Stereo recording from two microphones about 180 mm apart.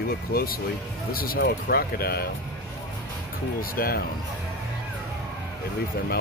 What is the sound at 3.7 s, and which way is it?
Speech, 55° left (ahead or behind).